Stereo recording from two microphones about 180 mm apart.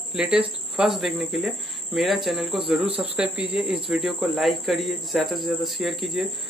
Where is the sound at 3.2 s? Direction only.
5° right (ahead or behind).